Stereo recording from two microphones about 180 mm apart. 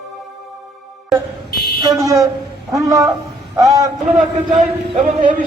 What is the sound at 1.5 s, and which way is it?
Fire alarm, 60° left (ahead or behind).